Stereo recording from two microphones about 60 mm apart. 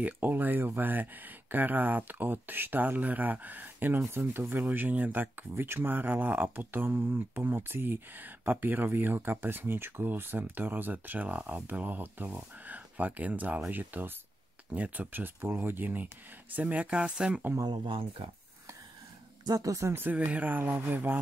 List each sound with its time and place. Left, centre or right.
0.0 s speech: right
19.5 s speech: right
19.8 s speech: right
20.1 s speech: right